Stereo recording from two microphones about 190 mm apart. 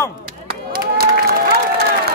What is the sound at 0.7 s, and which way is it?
Applause, 50° right (ahead or behind).